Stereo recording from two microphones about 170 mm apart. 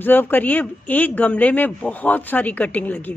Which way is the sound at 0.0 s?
10° left (ahead or behind).